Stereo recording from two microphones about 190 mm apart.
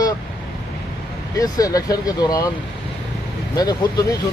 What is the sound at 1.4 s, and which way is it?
Speech, 20° left (ahead or behind).